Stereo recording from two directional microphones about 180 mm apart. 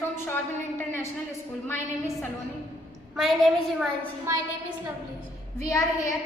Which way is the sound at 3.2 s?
Centre (ahead or behind).